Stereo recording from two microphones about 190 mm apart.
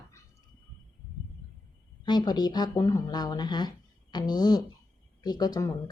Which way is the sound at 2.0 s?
20° left (ahead or behind).